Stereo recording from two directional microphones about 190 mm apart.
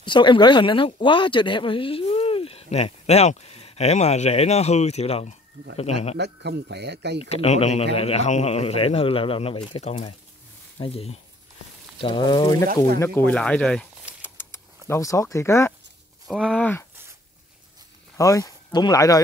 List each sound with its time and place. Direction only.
0.0 s speech: 25° left (ahead or behind)
6.1 s speech: 60° right (ahead or behind)
7.2 s speech: 35° left (ahead or behind); by 15.7 s 15° left (ahead or behind)
16.3 s speech: centre (ahead or behind)
18.1 s speech: 15° left (ahead or behind)